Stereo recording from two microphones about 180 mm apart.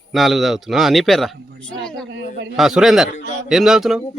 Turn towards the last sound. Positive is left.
turn(degrees=-5)  # may be behind; listen again after turning